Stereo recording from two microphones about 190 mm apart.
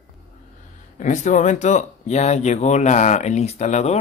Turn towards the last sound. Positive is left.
turn(degrees=35)  # may be behind; listen again after turning